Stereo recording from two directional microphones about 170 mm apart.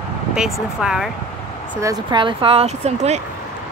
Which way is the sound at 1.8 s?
25° right (ahead or behind).